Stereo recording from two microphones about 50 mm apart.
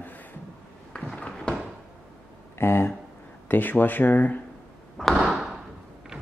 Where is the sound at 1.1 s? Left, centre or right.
Left.